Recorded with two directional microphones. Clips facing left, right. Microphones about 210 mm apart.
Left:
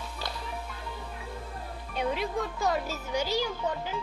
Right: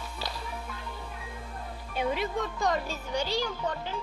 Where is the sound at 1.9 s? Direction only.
Centre (ahead or behind).